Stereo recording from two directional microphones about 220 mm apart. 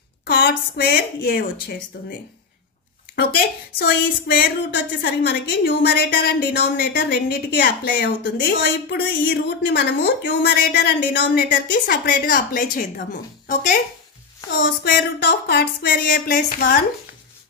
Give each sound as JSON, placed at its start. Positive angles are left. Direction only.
{"t": 0.2, "sound": "a woman's voice", "side_deg": 45}
{"t": 3.2, "sound": "a woman's voice", "side_deg": 45}
{"t": 14.8, "sound": "a woman's voice", "side_deg": 45}